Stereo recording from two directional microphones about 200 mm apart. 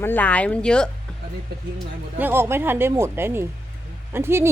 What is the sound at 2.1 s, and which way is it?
Speech, 10° right (ahead or behind).